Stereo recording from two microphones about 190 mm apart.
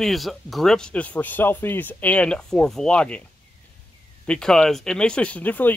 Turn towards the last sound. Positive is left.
turn(degrees=10)  # may be behind; listen again after turning